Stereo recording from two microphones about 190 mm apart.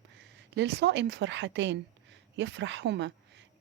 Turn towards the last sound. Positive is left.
turn(degrees=-70)  # may be behind; listen again after turning